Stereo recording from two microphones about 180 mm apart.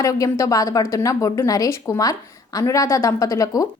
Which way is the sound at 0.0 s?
20° left (ahead or behind).